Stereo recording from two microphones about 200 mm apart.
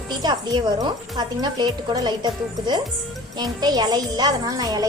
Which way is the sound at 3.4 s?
20° right (ahead or behind).